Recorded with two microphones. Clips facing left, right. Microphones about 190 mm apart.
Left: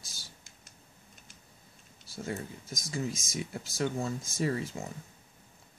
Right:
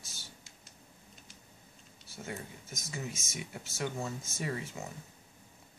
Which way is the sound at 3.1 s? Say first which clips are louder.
Left 5 dB; 15° left (ahead or behind).